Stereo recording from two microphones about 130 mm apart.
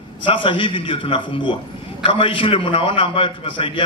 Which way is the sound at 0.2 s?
40° left (ahead or behind).